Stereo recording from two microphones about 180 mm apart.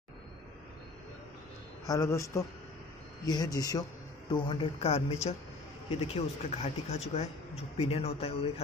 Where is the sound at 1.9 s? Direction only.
15° left (ahead or behind).